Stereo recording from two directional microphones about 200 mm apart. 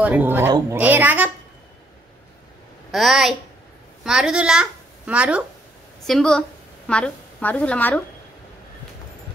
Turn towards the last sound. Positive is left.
turn(degrees=5)  # may be behind; listen again after turning